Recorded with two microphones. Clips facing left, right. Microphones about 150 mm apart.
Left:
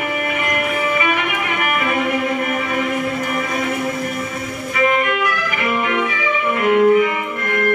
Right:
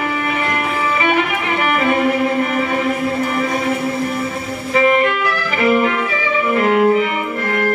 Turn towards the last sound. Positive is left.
turn(degrees=-30)  # may be behind; listen again after turning